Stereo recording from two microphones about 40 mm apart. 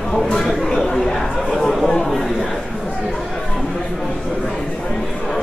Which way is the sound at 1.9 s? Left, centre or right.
Centre.